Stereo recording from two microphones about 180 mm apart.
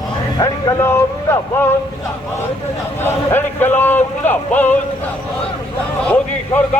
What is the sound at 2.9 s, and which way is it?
A man's voice, 10° left (ahead or behind).